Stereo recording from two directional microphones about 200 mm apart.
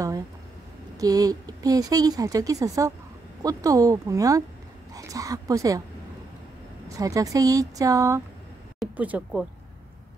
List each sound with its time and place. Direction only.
0.9 s speech: 15° right (ahead or behind)
6.9 s speech: 15° right (ahead or behind)